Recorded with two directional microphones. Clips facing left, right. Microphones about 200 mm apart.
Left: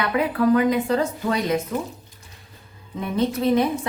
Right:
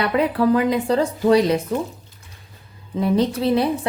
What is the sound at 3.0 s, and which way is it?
Speech, 30° right (ahead or behind).